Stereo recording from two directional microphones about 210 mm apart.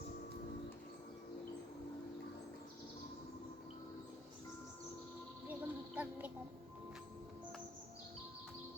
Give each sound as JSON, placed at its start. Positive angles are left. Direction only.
{"t": 5.5, "sound": "music", "side_deg": -10}